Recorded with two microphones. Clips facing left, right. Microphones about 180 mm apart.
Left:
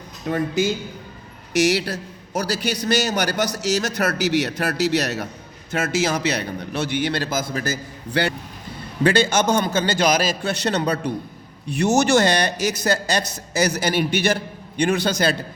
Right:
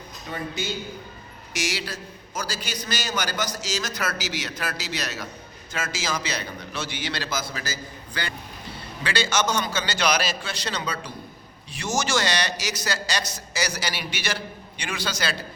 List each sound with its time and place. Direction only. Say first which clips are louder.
1.5 s a man's voice: left 11 dB; 60° left (ahead or behind)
9.0 s a man's voice: left 7 dB; 50° left (ahead or behind)